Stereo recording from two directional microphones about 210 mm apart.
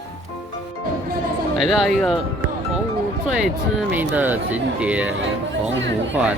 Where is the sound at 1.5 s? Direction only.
Centre (ahead or behind).